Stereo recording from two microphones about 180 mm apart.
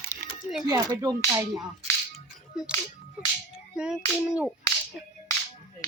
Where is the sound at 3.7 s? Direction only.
5° right (ahead or behind).